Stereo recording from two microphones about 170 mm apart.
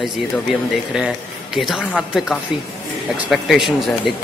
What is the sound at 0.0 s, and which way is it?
Speech, 5° right (ahead or behind).